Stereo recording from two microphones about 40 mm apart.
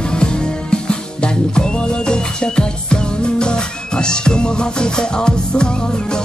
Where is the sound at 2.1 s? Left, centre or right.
Left.